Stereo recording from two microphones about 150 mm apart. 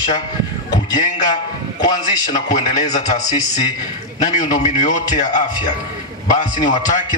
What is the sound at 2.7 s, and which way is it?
Speech, 50° left (ahead or behind).